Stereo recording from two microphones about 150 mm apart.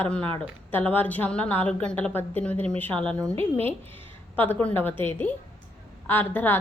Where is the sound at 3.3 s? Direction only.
40° right (ahead or behind).